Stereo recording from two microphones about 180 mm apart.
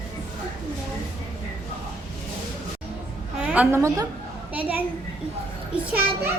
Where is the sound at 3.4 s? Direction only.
10° right (ahead or behind).